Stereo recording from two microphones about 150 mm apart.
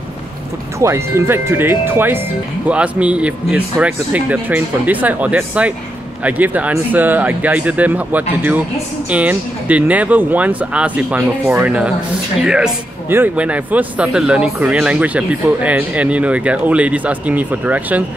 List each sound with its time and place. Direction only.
0.7 s speech: 20° right (ahead or behind)